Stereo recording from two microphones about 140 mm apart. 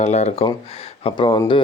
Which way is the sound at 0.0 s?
55° left (ahead or behind).